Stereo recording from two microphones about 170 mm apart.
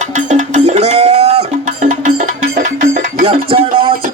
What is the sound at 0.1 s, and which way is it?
Music, 45° right (ahead or behind).